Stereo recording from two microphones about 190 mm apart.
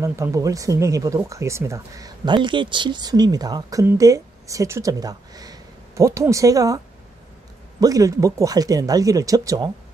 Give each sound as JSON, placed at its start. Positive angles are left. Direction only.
{"t": 0.0, "sound": "speech", "side_deg": -15}
{"t": 7.8, "sound": "speech", "side_deg": -20}